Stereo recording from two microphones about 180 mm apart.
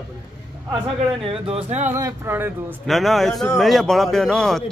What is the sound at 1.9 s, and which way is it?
Speech, 15° right (ahead or behind).